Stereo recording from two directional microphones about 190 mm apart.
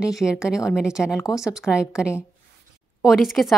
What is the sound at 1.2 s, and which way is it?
Speech, 15° left (ahead or behind).